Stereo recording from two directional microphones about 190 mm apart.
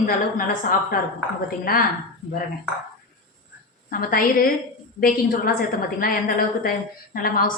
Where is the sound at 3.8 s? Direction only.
50° left (ahead or behind).